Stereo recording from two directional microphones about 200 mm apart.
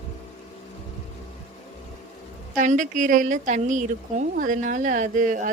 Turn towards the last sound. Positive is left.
turn(degrees=-40)  # may be behind; listen again after turning